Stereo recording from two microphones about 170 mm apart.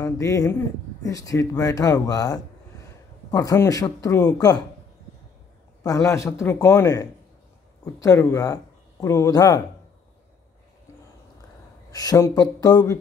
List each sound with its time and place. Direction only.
0.0 s speech: 20° left (ahead or behind)
6.0 s speech: 20° left (ahead or behind)
11.9 s speech: 20° left (ahead or behind)